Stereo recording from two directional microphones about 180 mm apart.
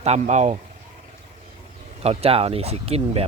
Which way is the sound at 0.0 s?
40° right (ahead or behind).